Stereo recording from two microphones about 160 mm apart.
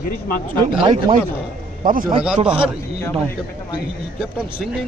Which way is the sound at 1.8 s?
60° right (ahead or behind).